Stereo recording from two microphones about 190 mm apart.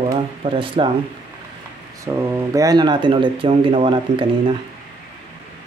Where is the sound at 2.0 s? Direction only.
10° right (ahead or behind); by 4.3 s 30° right (ahead or behind).